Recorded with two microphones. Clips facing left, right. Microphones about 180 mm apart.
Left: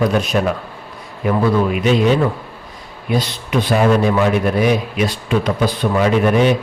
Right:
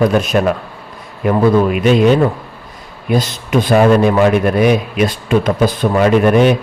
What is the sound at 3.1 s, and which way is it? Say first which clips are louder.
A man's voice: right 4 dB; 45° right (ahead or behind).